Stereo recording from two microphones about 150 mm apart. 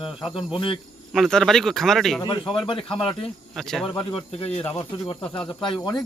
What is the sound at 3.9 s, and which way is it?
Speech, 40° left (ahead or behind).